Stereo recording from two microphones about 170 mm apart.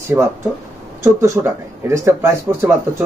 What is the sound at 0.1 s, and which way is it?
Speech, 15° right (ahead or behind).